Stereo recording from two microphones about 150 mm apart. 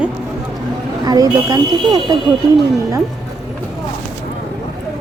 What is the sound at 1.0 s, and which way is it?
Speech, 25° right (ahead or behind).